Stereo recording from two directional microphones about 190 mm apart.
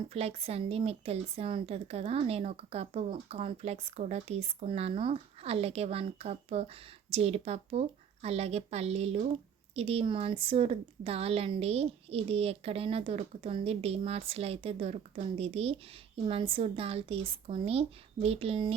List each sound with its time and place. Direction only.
0.1 s speech: 30° right (ahead or behind)